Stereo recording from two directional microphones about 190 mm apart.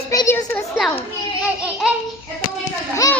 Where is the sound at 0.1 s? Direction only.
15° left (ahead or behind).